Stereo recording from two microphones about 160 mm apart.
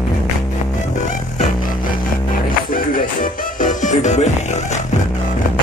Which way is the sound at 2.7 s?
55° left (ahead or behind).